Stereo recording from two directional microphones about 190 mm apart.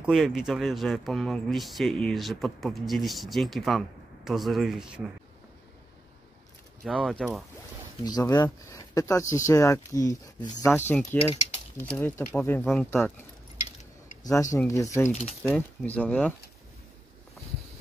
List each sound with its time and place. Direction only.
0.0 s speech: centre (ahead or behind)
6.8 s speech: centre (ahead or behind)
8.0 s speech: 20° left (ahead or behind); by 13.1 s 5° left (ahead or behind)
14.2 s speech: 15° left (ahead or behind)
15.0 s speech: 35° left (ahead or behind)
15.5 s speech: 5° left (ahead or behind)